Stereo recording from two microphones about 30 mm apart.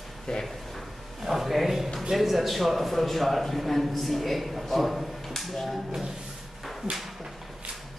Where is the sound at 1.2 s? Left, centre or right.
Centre.